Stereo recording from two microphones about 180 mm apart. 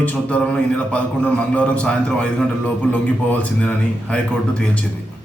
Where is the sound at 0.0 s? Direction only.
5° left (ahead or behind).